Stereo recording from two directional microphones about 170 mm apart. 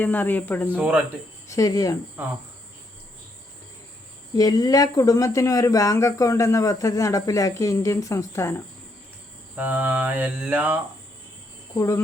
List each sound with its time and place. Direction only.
0.0 s speech: 10° left (ahead or behind)
2.2 s cricket: 10° right (ahead or behind)
4.4 s speech: 20° left (ahead or behind)
9.6 s cricket: 10° right (ahead or behind)